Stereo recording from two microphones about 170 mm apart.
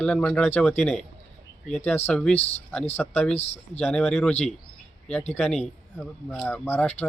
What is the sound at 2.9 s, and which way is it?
Speech, 10° left (ahead or behind).